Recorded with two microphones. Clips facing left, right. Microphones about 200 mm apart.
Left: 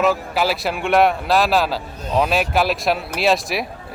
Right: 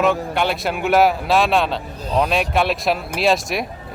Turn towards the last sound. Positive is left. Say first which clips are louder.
# even
turn(degrees=0)  # may be behind; listen again after turning